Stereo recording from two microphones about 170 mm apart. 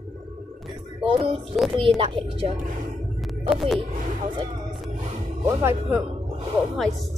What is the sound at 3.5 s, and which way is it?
Speech, centre (ahead or behind).